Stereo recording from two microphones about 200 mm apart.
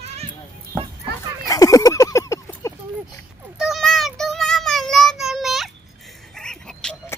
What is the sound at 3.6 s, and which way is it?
Child singing, centre (ahead or behind).